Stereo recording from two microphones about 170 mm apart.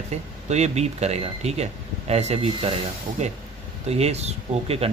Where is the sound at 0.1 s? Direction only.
40° right (ahead or behind).